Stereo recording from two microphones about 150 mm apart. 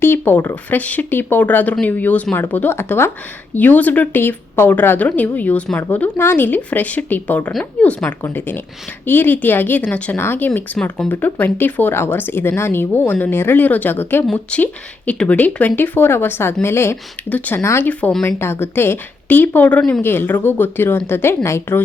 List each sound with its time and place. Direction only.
0.0 s speech: 15° left (ahead or behind)